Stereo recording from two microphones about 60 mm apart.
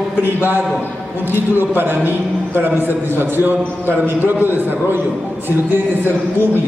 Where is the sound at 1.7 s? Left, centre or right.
Right.